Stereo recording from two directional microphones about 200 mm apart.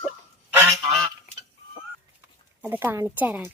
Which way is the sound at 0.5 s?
10° right (ahead or behind).